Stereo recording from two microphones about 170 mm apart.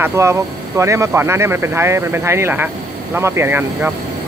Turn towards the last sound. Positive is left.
turn(degrees=-15)  # may be behind; listen again after turning